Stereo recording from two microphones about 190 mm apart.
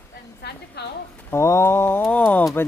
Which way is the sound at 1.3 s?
15° left (ahead or behind).